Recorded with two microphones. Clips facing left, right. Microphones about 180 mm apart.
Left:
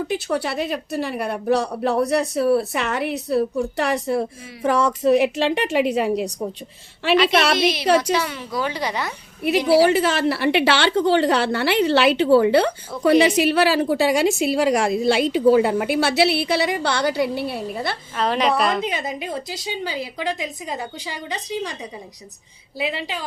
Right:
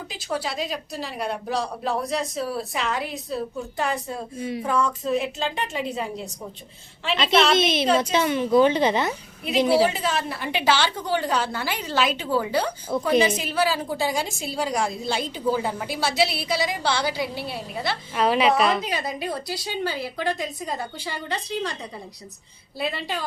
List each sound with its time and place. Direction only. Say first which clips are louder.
0.1 s a woman's voice: left 6 dB; 60° left (ahead or behind); by 6.3 s 75° left (ahead or behind)
7.5 s a woman's voice: left 2 dB; 25° right (ahead or behind)
9.8 s a woman's voice: left 6 dB; 70° left (ahead or behind); by 17.9 s 55° left (ahead or behind)
18.2 s a woman's voice: even; 5° right (ahead or behind)
18.8 s a woman's voice: left 2 dB; 25° left (ahead or behind)
22.8 s a woman's voice: left 2 dB; 15° left (ahead or behind)